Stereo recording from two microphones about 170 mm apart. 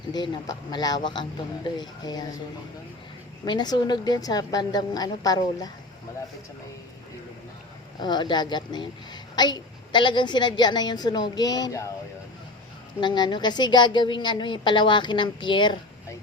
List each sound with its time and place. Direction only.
0.1 s a woman's voice: 25° left (ahead or behind)
3.4 s a woman's voice: 25° left (ahead or behind)
7.9 s a woman's voice: 25° left (ahead or behind)
13.0 s a woman's voice: 25° left (ahead or behind)